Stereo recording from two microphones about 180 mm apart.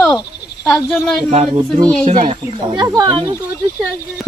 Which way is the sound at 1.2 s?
35° right (ahead or behind).